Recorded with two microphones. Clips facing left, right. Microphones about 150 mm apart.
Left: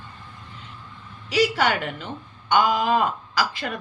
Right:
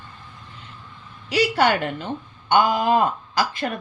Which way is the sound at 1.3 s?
55° right (ahead or behind).